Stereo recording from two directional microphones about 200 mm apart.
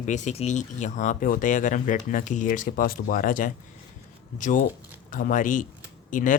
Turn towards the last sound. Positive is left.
turn(degrees=40)  # may be behind; listen again after turning